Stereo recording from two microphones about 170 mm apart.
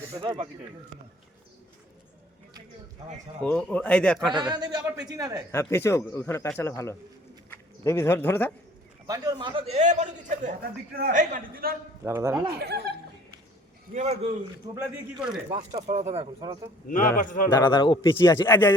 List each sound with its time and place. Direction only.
0.1 s speech: 25° right (ahead or behind)
3.4 s speech: 5° left (ahead or behind)
4.4 s a man's voice: 25° right (ahead or behind)
5.5 s speech: 15° left (ahead or behind)
9.0 s a man's voice: 20° right (ahead or behind); by 11.7 s 55° right (ahead or behind)
12.0 s a man's voice: 15° right (ahead or behind)
12.5 s speech: 70° right (ahead or behind)
13.9 s a man's voice: 40° right (ahead or behind)
14.8 s speech: 5° right (ahead or behind)
15.5 s a man's voice: 40° right (ahead or behind)
17.2 s a man's voice: 50° left (ahead or behind)
17.5 s a man's voice: 25° left (ahead or behind)